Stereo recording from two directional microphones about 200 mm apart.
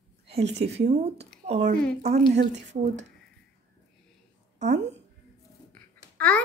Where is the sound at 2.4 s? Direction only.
60° right (ahead or behind).